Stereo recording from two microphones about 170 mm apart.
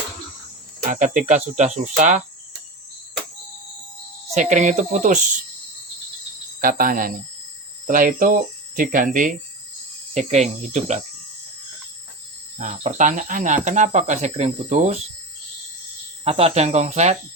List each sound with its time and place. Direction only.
0.9 s speech: 45° right (ahead or behind)
4.4 s speech: 45° right (ahead or behind)
6.6 s speech: 55° right (ahead or behind)
12.5 s speech: 45° right (ahead or behind)
16.2 s speech: 35° right (ahead or behind)